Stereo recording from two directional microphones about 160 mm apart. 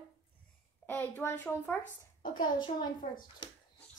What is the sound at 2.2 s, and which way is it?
Speech, 30° left (ahead or behind).